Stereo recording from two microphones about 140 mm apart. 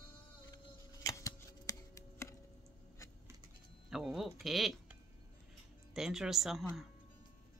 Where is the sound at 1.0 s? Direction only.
25° left (ahead or behind).